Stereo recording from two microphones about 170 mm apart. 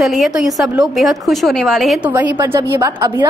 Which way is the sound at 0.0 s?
Centre (ahead or behind).